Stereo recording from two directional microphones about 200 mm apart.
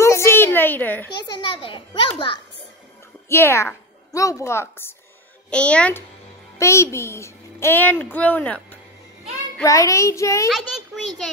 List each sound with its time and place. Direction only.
0.0 s a sound: 15° left (ahead or behind)
1.3 s a child's voice: 25° left (ahead or behind)
3.3 s a woman's voice: 15° left (ahead or behind)